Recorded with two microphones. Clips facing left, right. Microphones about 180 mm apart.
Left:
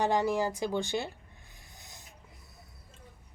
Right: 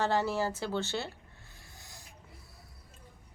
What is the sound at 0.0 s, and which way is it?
A woman's voice, 15° left (ahead or behind).